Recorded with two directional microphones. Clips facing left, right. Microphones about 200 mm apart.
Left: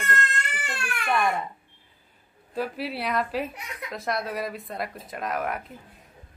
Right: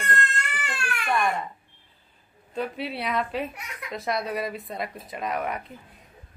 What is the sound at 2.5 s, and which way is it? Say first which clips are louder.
Speech: even; centre (ahead or behind).